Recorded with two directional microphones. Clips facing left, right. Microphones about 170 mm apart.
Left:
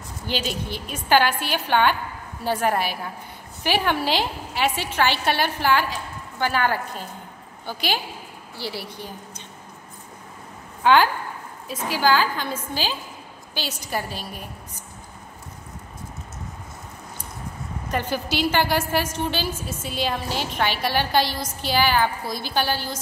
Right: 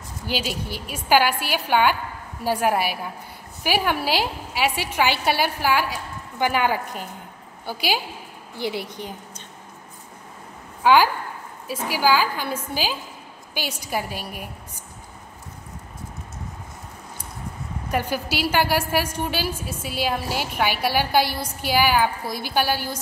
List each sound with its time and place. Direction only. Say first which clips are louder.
0.3 s a woman's voice: even; 10° right (ahead or behind)
10.8 s a woman's voice: right 1 dB; 10° right (ahead or behind)
17.8 s a woman's voice: right 1 dB; 10° right (ahead or behind)